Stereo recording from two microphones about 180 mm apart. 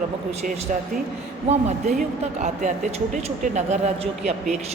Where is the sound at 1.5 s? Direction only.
45° right (ahead or behind).